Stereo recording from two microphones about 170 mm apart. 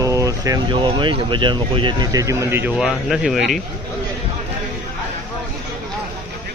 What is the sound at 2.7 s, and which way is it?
Speech, centre (ahead or behind).